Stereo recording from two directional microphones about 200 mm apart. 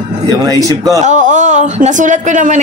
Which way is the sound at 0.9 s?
35° right (ahead or behind).